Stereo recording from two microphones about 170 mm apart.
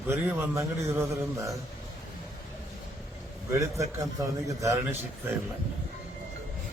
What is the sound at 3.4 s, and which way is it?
A man's voice, 20° right (ahead or behind).